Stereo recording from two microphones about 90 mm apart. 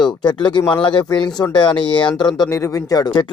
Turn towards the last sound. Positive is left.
turn(degrees=50)  # may be behind; listen again after turning